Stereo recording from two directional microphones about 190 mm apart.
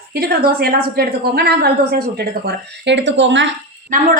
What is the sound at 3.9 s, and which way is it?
Speech, 40° right (ahead or behind).